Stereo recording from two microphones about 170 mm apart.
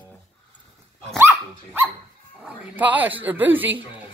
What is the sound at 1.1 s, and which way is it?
Dog, 15° right (ahead or behind).